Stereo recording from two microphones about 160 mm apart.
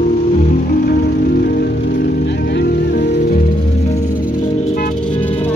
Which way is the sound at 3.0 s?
55° left (ahead or behind).